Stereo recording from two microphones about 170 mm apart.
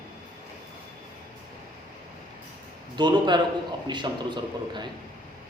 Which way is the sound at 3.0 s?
25° right (ahead or behind).